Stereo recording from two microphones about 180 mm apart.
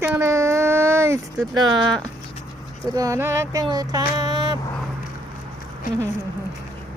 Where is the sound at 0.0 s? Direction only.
15° right (ahead or behind).